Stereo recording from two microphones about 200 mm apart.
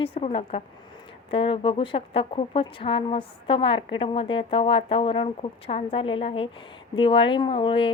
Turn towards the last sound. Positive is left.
turn(degrees=25)  # may be behind; listen again after turning